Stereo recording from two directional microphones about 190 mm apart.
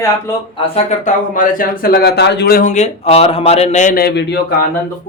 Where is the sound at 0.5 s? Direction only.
30° left (ahead or behind); by 2.6 s 60° left (ahead or behind).